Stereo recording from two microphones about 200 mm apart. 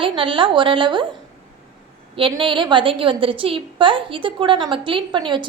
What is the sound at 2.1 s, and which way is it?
A woman's voice, 25° right (ahead or behind).